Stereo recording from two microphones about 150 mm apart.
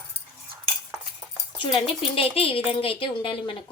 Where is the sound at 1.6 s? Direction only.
35° left (ahead or behind).